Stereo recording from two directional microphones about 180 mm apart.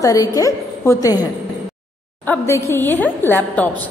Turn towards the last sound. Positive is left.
turn(degrees=10)  # may be behind; listen again after turning